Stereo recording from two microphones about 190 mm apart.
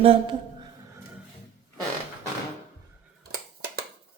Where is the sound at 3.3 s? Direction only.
55° right (ahead or behind).